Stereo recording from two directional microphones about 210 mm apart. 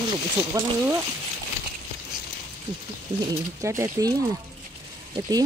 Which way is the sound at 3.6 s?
15° right (ahead or behind).